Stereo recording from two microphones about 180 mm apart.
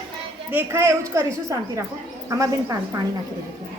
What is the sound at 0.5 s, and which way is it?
Speech, 15° right (ahead or behind).